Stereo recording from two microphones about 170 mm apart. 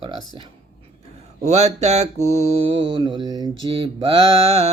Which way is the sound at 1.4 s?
40° right (ahead or behind).